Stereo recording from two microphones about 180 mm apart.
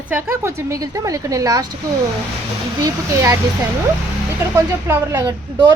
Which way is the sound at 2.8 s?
15° right (ahead or behind).